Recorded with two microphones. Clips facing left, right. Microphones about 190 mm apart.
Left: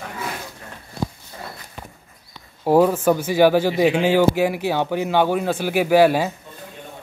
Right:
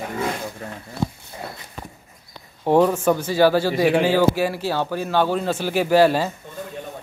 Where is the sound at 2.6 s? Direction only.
5° left (ahead or behind).